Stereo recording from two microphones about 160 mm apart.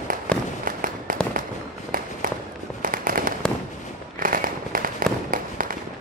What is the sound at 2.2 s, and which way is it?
Fireworks, 60° right (ahead or behind).